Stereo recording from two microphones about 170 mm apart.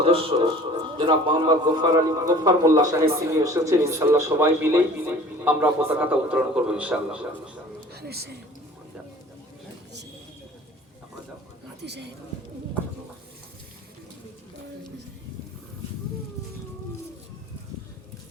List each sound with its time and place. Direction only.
0.0 s a man's voice: 30° right (ahead or behind); by 7.6 s 5° right (ahead or behind)
7.9 s a man's voice: 70° right (ahead or behind)
11.8 s speech: 85° right